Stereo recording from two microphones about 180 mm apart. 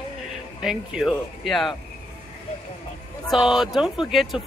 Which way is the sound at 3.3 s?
5° right (ahead or behind).